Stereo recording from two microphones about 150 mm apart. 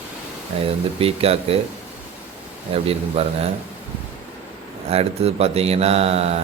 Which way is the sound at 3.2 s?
40° right (ahead or behind).